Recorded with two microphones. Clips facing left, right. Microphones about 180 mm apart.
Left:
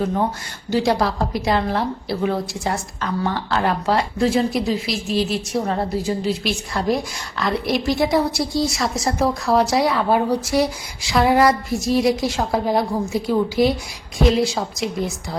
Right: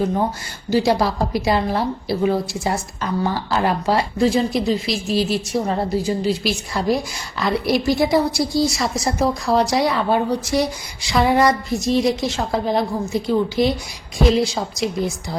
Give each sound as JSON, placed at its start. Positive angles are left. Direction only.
{"t": 0.7, "sound": "a woman's voice", "side_deg": -5}